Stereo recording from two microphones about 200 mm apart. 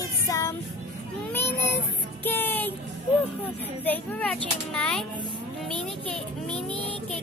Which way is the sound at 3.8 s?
10° left (ahead or behind).